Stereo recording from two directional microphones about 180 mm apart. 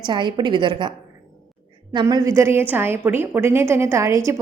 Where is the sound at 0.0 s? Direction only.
25° right (ahead or behind).